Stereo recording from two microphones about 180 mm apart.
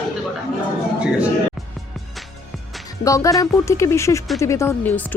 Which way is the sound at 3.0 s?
20° left (ahead or behind).